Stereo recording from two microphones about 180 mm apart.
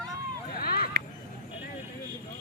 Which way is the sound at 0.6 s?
55° left (ahead or behind).